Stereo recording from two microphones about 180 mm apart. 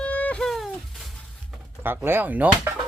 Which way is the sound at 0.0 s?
5° left (ahead or behind).